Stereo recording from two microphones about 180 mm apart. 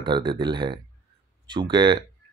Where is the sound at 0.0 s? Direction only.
25° right (ahead or behind).